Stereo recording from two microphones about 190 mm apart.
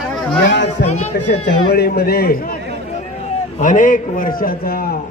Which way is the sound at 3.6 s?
45° left (ahead or behind).